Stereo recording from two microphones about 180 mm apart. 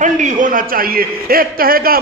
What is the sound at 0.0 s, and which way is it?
A man's voice, 45° right (ahead or behind).